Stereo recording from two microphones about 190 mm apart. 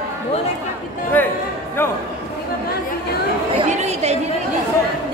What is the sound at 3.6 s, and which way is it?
Chatter, 35° right (ahead or behind).